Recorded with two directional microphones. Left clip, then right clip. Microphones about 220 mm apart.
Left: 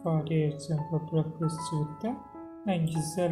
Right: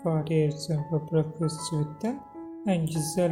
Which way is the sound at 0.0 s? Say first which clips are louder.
Right 4 dB; 25° right (ahead or behind).